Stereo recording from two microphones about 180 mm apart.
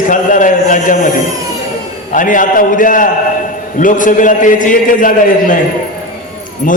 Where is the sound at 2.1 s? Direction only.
45° left (ahead or behind).